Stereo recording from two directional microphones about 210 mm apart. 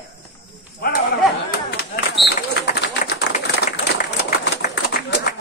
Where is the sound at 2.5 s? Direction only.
50° left (ahead or behind).